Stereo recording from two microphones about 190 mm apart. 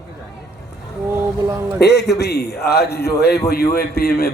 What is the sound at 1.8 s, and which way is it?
A man's voice, 60° left (ahead or behind).